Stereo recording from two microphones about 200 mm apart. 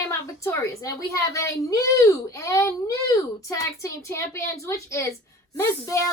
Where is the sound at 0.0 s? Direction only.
15° left (ahead or behind).